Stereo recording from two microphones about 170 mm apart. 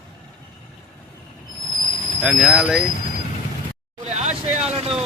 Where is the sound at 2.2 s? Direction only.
5° right (ahead or behind).